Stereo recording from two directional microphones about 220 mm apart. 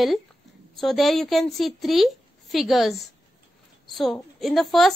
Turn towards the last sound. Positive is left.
turn(degrees=0)  # may be behind; listen again after turning